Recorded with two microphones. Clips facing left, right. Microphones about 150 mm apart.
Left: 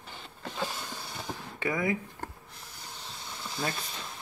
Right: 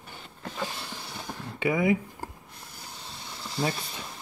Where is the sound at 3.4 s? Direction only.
5° right (ahead or behind).